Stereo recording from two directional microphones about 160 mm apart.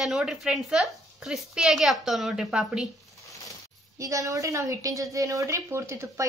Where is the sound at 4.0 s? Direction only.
20° right (ahead or behind).